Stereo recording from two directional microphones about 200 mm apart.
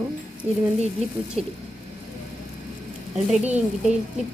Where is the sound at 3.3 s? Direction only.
5° right (ahead or behind).